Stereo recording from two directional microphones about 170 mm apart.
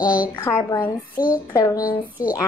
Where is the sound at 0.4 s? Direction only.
15° left (ahead or behind).